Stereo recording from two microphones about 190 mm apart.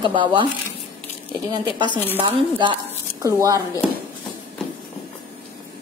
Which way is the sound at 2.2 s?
25° right (ahead or behind).